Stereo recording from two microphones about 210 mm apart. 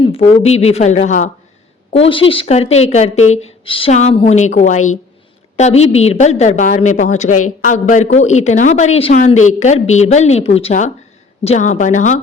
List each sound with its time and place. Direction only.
0.0 s a woman's voice: 25° left (ahead or behind)